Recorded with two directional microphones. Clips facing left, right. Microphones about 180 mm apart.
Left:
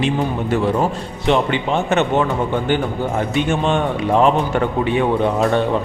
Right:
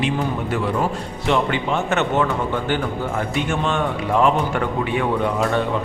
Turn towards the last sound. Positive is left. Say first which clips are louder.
# left 3 dB
turn(degrees=25)  # may be behind; listen again after turning